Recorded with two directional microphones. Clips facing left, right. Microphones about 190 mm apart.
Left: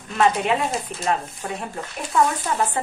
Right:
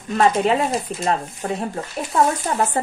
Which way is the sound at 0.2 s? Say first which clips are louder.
Right 2 dB; 35° right (ahead or behind).